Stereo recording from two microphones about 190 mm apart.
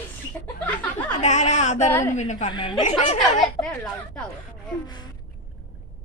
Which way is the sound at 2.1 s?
40° left (ahead or behind).